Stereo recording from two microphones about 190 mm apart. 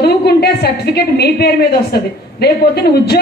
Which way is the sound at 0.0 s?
60° left (ahead or behind).